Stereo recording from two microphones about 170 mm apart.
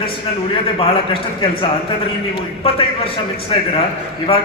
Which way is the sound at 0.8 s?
30° left (ahead or behind).